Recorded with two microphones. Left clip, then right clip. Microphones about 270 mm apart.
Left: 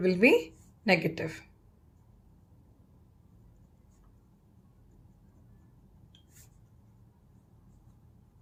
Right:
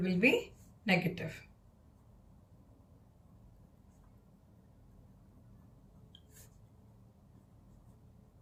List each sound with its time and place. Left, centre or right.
0.0 s a woman's voice: centre